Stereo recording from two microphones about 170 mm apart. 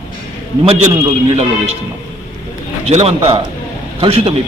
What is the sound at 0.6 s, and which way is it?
A man's voice, 35° right (ahead or behind).